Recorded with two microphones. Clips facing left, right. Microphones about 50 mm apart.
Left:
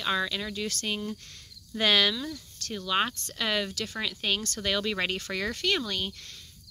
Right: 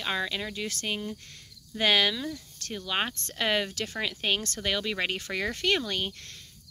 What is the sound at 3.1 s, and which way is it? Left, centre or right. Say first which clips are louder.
Speech: right 1 dB; right.